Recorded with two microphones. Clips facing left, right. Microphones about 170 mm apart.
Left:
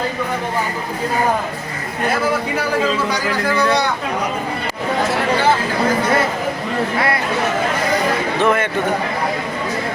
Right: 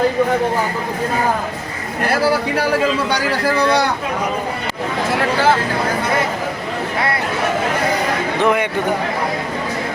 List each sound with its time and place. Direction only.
8.4 s a man's voice: 15° right (ahead or behind)